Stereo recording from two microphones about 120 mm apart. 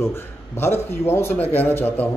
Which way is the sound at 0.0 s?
20° left (ahead or behind).